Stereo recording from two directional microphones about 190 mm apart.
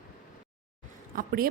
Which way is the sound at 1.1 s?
50° right (ahead or behind).